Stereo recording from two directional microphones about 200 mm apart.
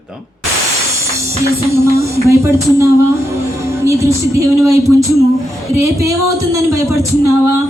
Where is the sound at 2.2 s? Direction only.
15° right (ahead or behind).